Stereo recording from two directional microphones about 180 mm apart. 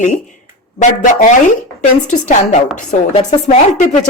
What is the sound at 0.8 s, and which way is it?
A woman's voice, 45° left (ahead or behind).